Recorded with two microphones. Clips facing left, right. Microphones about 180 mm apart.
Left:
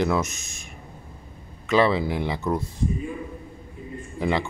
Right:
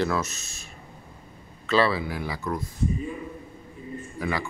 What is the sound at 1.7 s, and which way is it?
Speech, 20° left (ahead or behind).